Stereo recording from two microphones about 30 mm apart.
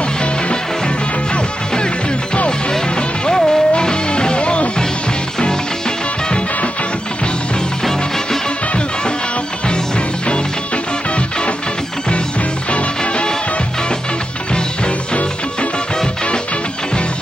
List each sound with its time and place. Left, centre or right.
0.2 s music: left
3.0 s music: left
5.5 s music: left
9.7 s music: left
12.7 s music: left